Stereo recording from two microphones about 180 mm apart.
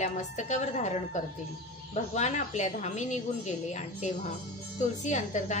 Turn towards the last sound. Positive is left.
turn(degrees=40)  # may be behind; listen again after turning